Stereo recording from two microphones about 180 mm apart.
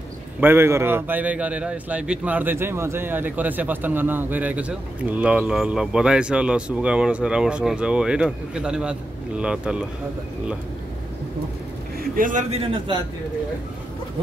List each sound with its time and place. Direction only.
0.4 s a man's voice: 15° right (ahead or behind)
12.0 s a man's voice: 50° right (ahead or behind); by 13.0 s 30° right (ahead or behind)